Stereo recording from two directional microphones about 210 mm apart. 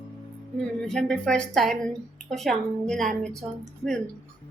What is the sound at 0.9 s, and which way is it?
A woman's voice, 5° left (ahead or behind).